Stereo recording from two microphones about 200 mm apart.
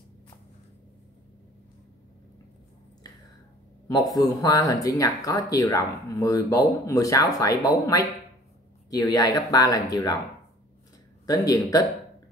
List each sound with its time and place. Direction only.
3.8 s speech: 20° left (ahead or behind)
11.2 s speech: 15° left (ahead or behind)